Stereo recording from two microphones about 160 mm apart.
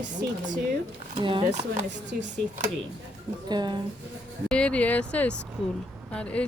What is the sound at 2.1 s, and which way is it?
Speech, 65° right (ahead or behind).